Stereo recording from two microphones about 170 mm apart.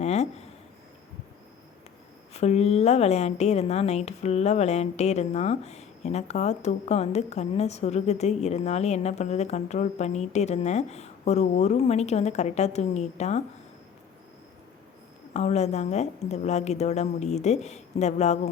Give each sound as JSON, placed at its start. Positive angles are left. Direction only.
{"t": 0.0, "sound": "speech", "side_deg": 40}
{"t": 2.3, "sound": "speech", "side_deg": 40}
{"t": 15.3, "sound": "speech", "side_deg": 40}